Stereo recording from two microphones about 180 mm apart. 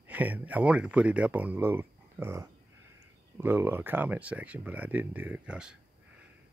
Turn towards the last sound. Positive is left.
turn(degrees=-5)  # may be behind; listen again after turning